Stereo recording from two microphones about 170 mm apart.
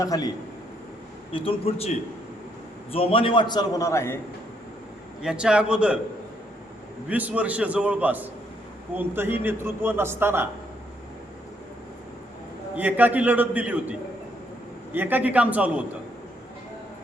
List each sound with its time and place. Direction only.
0.0 s a man's voice: 20° left (ahead or behind)
1.3 s a man's voice: 30° left (ahead or behind)
2.9 s a man's voice: 35° left (ahead or behind); by 4.2 s 15° left (ahead or behind)
5.2 s a man's voice: 5° right (ahead or behind)
7.1 s a man's voice: 10° right (ahead or behind)
12.7 s a man's voice: 10° right (ahead or behind)
14.9 s a man's voice: 10° right (ahead or behind)